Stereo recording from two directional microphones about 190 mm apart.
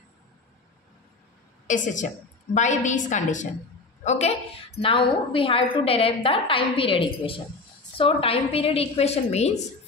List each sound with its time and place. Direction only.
1.7 s a woman's voice: 40° left (ahead or behind)